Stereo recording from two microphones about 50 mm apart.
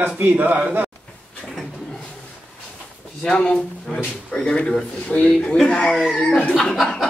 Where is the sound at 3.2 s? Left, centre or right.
Centre.